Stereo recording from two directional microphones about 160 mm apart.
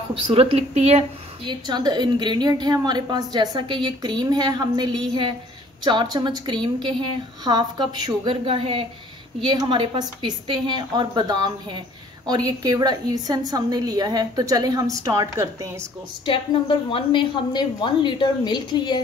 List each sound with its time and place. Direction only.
0.1 s speech: 35° right (ahead or behind)
1.5 s a woman's voice: 25° right (ahead or behind)
16.3 s a woman's voice: 30° left (ahead or behind)